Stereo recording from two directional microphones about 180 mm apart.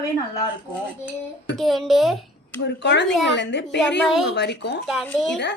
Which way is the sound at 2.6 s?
75° left (ahead or behind).